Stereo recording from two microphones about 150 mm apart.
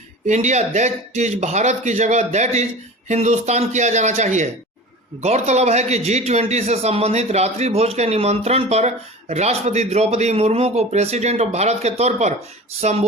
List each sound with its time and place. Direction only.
0.3 s a man's voice: 50° right (ahead or behind)